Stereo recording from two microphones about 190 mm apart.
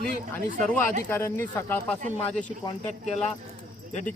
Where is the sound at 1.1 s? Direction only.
10° left (ahead or behind).